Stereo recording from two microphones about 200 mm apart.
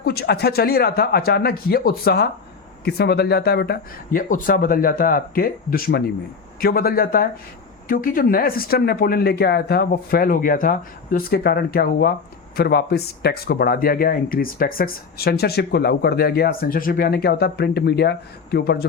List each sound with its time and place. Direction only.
0.0 s speech: 50° left (ahead or behind)